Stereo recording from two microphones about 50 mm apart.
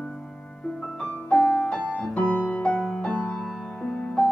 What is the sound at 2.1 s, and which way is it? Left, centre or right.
Music, left.